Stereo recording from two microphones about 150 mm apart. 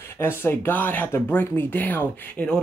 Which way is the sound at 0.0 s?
15° left (ahead or behind).